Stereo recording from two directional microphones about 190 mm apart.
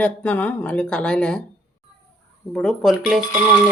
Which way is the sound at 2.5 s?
5° left (ahead or behind).